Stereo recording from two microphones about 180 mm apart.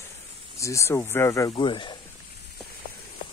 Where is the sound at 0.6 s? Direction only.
15° left (ahead or behind).